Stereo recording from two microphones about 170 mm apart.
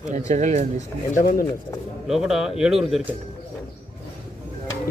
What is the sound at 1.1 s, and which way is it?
Speech, 50° left (ahead or behind).